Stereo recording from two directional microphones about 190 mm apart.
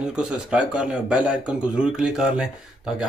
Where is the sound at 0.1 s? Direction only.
5° right (ahead or behind).